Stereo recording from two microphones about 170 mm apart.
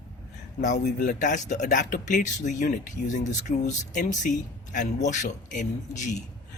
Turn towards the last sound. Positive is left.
turn(degrees=45)  # may be behind; listen again after turning